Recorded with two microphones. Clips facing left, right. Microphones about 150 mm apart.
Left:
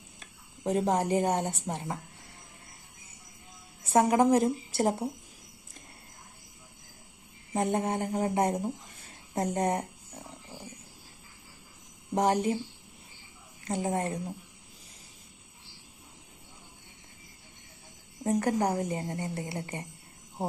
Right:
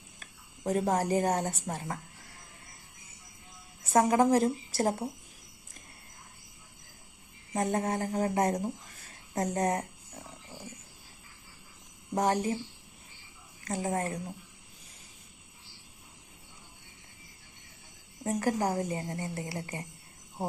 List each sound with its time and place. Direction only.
0.2 s speech: 25° left (ahead or behind)
3.8 s a woman's voice: 25° left (ahead or behind)
7.5 s a woman's voice: 25° left (ahead or behind)
12.1 s a woman's voice: 30° left (ahead or behind)
13.7 s a woman's voice: 30° left (ahead or behind)
18.2 s a woman's voice: 30° left (ahead or behind)